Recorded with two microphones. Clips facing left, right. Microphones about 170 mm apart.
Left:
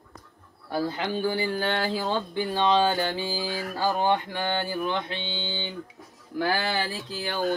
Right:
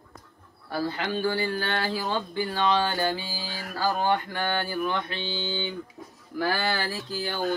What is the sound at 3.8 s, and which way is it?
Mantra, 20° left (ahead or behind).